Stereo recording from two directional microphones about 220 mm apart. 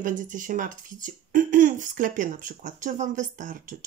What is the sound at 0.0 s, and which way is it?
Speech, 35° right (ahead or behind).